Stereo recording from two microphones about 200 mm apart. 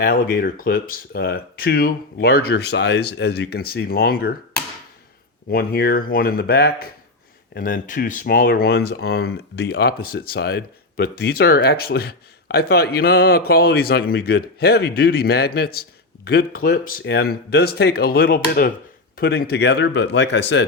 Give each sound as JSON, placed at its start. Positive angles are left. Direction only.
{"t": 0.0, "sound": "speech", "side_deg": 45}
{"t": 5.5, "sound": "speech", "side_deg": 50}